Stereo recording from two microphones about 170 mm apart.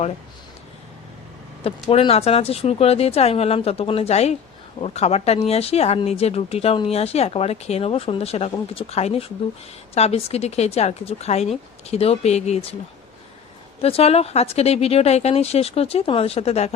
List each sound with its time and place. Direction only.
1.6 s speech: 35° left (ahead or behind)
13.8 s speech: 35° left (ahead or behind)